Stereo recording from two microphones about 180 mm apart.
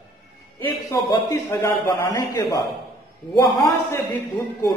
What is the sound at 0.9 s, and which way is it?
A man's voice, 20° left (ahead or behind).